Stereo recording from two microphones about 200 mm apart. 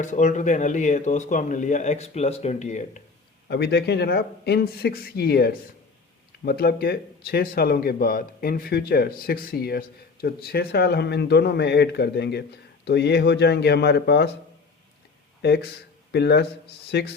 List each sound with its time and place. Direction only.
0.0 s speech: 40° left (ahead or behind)
3.5 s speech: 55° left (ahead or behind)
15.4 s speech: 55° left (ahead or behind)